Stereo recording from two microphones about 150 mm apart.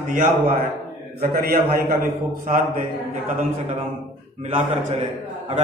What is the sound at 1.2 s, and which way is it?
Speech, 85° right.